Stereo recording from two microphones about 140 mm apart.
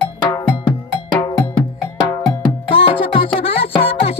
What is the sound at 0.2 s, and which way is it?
Cowbell, 35° left (ahead or behind).